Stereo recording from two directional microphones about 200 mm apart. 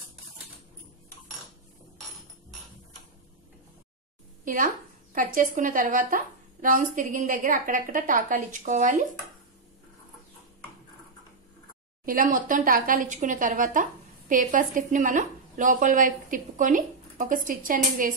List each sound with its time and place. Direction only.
5.1 s a woman's voice: 45° right (ahead or behind)
12.1 s a woman's voice: 45° right (ahead or behind)